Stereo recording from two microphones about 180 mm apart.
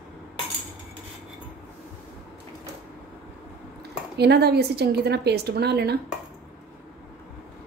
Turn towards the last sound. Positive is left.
turn(degrees=-65)  # may be behind; listen again after turning